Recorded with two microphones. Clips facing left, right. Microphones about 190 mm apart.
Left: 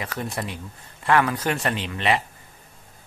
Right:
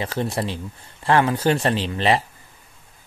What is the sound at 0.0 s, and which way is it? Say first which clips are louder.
Speech: right 5 dB; 30° right (ahead or behind).